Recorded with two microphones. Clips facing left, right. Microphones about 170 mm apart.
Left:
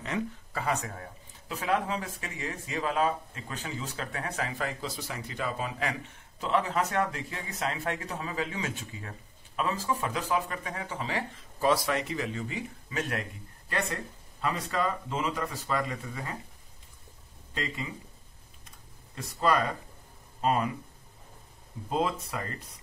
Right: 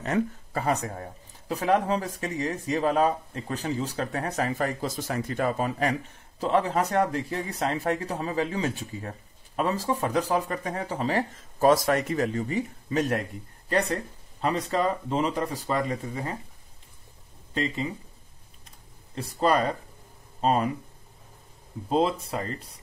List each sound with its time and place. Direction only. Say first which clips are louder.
0.0 s speech: right 6 dB; 45° right (ahead or behind)
19.1 s speech: right 3 dB; 30° right (ahead or behind)
21.8 s speech: right 5 dB; 30° right (ahead or behind)